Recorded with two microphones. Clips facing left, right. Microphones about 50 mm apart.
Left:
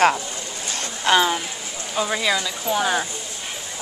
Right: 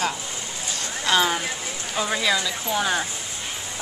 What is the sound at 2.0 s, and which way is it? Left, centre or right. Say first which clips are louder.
Speech: left 1 dB; centre.